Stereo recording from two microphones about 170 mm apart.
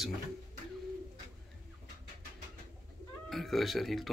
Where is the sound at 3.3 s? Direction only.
Centre (ahead or behind).